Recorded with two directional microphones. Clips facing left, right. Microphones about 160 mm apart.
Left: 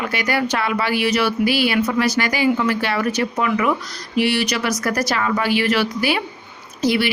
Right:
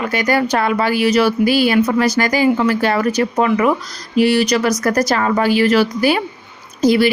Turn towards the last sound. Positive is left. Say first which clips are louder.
# right 6 dB
turn(degrees=-40)  # may be behind; listen again after turning